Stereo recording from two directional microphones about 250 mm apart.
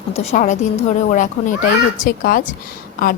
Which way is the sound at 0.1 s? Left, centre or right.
Left.